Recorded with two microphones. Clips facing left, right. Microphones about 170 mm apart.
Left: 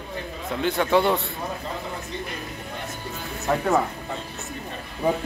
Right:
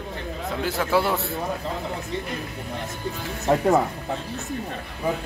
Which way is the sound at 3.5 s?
30° right (ahead or behind).